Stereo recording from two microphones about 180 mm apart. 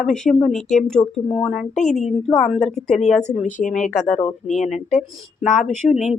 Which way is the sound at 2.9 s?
40° left (ahead or behind).